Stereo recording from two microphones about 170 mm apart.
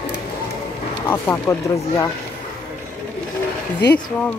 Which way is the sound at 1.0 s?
10° left (ahead or behind).